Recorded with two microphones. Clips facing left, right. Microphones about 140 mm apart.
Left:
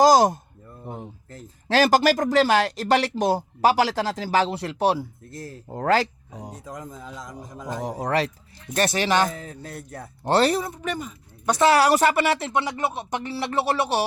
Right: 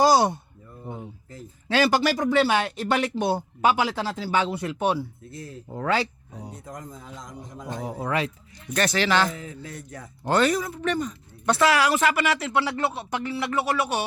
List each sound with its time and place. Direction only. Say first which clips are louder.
0.0 s a sound: left 3 dB; 40° left (ahead or behind)
1.6 s speech: left 3 dB; 45° left (ahead or behind)
3.8 s speech: left 4 dB; 90° left
4.0 s speech: left 2 dB; 40° left (ahead or behind)
4.7 s speech: left 3 dB; 80° left
5.7 s speech: left 4 dB; 45° left (ahead or behind)
7.9 s speech: left 3 dB; 40° left (ahead or behind)
8.7 s speech: left 1 dB; 25° left (ahead or behind)
9.3 s speech: left 1 dB; 45° left (ahead or behind)
10.2 s speech: left 2 dB; 30° left (ahead or behind)
10.8 s speech: right 4 dB; 10° left (ahead or behind)
11.6 s speech: left 4 dB; 35° left (ahead or behind)
12.6 s speech: even; 15° left (ahead or behind)